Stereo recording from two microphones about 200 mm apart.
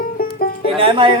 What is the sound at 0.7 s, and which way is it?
Speech, 25° right (ahead or behind).